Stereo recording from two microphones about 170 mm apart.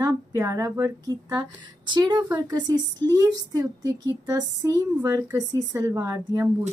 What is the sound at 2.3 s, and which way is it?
Speech, 10° right (ahead or behind).